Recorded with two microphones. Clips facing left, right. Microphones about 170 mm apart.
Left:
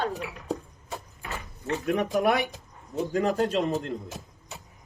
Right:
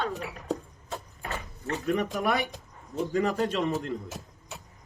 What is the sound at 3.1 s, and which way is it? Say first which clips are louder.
Speech: left 2 dB; 45° left (ahead or behind).